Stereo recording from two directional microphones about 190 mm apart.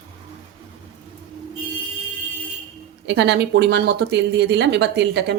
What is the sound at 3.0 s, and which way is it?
Speech, 65° right (ahead or behind).